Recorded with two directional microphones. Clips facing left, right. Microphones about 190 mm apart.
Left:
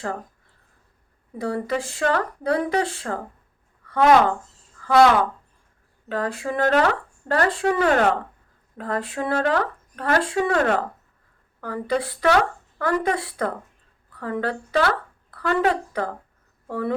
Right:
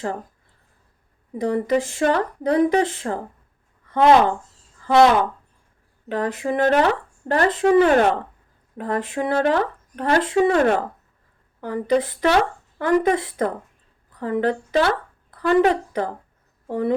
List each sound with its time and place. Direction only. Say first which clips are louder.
1.4 s speech: right 5 dB; 20° right (ahead or behind)